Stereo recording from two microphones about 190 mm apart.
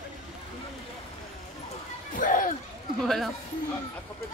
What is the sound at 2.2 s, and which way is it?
Speech, 45° left (ahead or behind).